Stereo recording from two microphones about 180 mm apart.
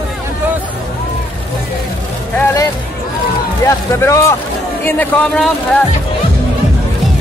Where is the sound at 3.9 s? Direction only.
15° left (ahead or behind).